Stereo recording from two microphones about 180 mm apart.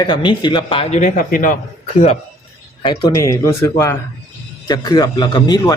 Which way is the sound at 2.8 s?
25° left (ahead or behind).